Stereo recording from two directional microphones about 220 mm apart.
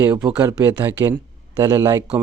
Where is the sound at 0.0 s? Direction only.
10° right (ahead or behind).